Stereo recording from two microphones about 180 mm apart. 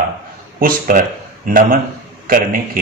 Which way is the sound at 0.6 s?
50° right (ahead or behind).